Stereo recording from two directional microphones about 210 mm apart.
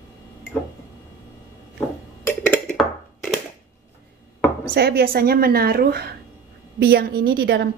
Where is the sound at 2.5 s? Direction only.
5° left (ahead or behind).